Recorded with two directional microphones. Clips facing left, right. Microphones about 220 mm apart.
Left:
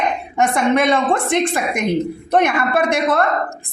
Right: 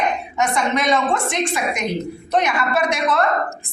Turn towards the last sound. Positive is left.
turn(degrees=55)  # may be behind; listen again after turning